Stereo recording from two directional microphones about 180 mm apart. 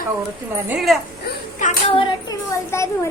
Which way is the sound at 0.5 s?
10° right (ahead or behind).